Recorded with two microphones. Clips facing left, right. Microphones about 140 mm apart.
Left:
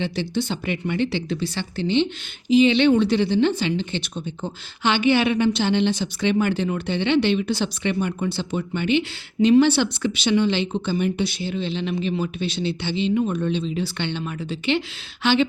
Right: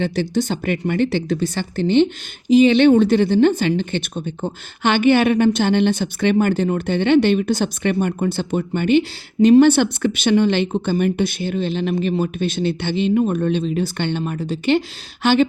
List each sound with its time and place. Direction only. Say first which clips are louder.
0.0 s speech: right 5 dB; 45° right (ahead or behind)